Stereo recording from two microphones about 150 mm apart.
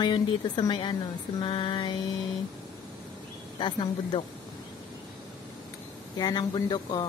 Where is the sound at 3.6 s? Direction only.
35° left (ahead or behind).